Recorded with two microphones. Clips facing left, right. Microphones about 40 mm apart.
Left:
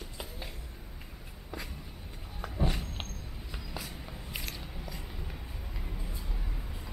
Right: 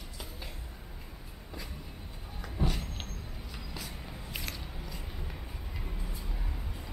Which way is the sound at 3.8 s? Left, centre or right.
Centre.